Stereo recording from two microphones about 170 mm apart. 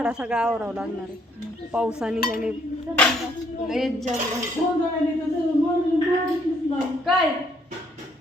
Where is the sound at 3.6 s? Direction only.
Centre (ahead or behind).